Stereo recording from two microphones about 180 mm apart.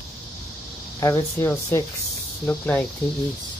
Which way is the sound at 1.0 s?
15° left (ahead or behind).